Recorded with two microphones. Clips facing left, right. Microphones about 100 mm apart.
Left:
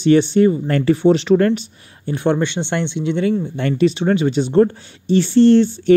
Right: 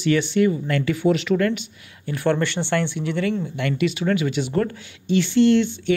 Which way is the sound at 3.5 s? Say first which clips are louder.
Left 6 dB; 35° left (ahead or behind).